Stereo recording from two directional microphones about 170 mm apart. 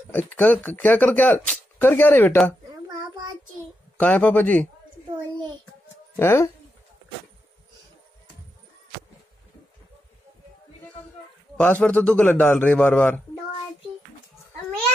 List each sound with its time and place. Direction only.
0.1 s speech: 10° left (ahead or behind)
4.0 s speech: 10° left (ahead or behind)
6.1 s speech: 15° left (ahead or behind)
11.5 s speech: 10° left (ahead or behind)